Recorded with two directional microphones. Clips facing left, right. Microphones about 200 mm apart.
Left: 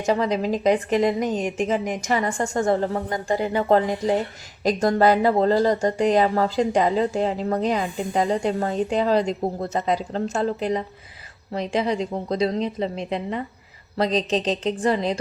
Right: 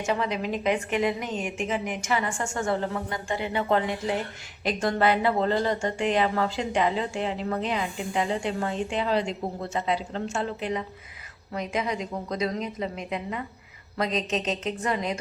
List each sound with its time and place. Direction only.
0.0 s speech: 40° left (ahead or behind)